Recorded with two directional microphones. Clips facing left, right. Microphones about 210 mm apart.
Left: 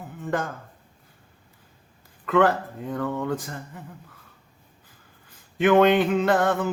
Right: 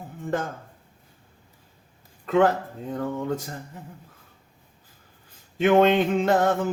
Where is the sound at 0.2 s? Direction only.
25° right (ahead or behind).